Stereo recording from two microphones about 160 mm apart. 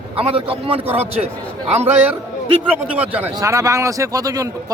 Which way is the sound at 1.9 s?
10° right (ahead or behind).